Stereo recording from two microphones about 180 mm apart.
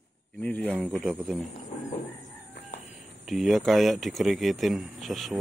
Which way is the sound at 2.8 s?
Centre (ahead or behind).